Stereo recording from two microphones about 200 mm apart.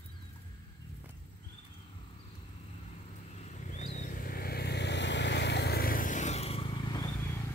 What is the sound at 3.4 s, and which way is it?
Vehicle, 35° left (ahead or behind).